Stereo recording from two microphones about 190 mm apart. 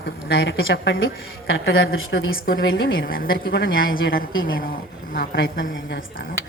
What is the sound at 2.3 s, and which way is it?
Speech, 50° left (ahead or behind).